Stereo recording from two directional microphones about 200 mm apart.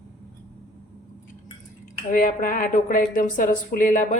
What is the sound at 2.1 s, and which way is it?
Speech, 40° left (ahead or behind).